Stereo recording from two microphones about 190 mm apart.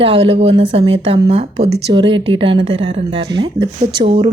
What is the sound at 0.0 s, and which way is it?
Speech, 30° right (ahead or behind).